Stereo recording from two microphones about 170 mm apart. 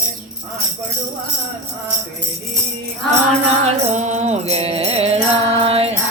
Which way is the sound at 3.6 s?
45° right (ahead or behind).